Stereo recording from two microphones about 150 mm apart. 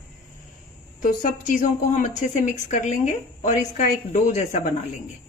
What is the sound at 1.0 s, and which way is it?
A woman's voice, 60° left (ahead or behind).